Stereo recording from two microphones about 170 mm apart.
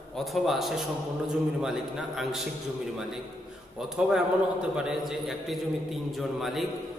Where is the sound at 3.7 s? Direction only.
5° right (ahead or behind).